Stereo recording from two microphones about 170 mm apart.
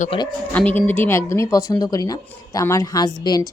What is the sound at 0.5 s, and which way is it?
Speech, 10° left (ahead or behind).